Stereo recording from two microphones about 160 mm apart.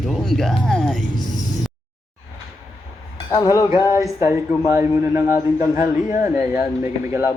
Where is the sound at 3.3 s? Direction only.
20° left (ahead or behind).